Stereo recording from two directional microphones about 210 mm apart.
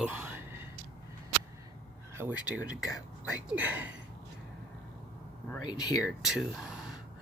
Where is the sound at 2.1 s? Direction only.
10° right (ahead or behind).